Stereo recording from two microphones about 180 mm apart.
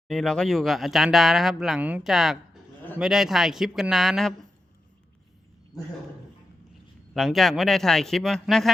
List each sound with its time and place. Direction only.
0.1 s speech: 5° left (ahead or behind)
5.7 s speech: 20° left (ahead or behind)
7.1 s speech: centre (ahead or behind)